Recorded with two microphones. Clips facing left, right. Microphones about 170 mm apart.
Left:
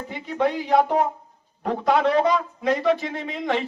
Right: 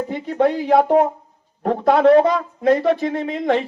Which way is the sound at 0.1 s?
45° right (ahead or behind).